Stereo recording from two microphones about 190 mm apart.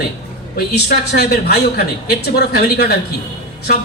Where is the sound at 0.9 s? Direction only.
55° left (ahead or behind).